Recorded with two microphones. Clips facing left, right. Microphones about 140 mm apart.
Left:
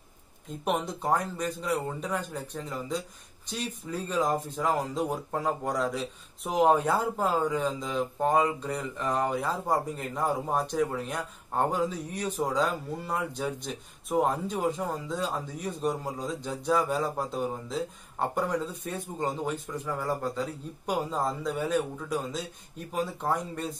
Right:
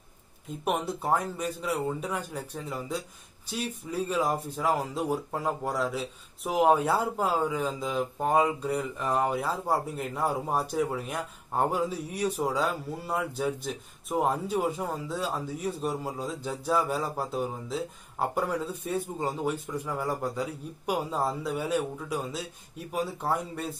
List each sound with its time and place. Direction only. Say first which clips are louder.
0.7 s speech: even; 5° right (ahead or behind)